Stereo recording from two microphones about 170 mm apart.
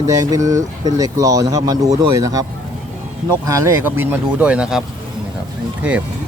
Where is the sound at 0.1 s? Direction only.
20° right (ahead or behind).